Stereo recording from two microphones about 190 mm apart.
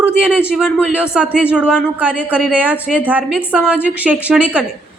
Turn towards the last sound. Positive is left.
turn(degrees=-5)  # may be behind; listen again after turning